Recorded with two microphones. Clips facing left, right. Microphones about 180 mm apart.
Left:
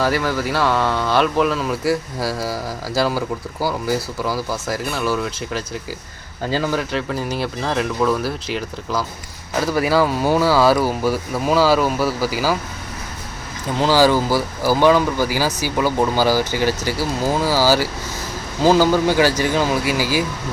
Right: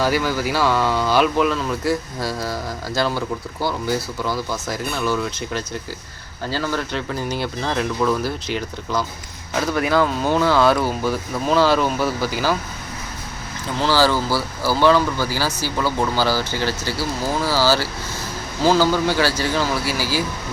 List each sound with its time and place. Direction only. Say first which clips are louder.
0.0 s speech: even; centre (ahead or behind)
6.5 s speech: left 3 dB; 15° left (ahead or behind)
6.9 s speech: left 2 dB; centre (ahead or behind)
13.7 s speech: left 3 dB; 15° left (ahead or behind)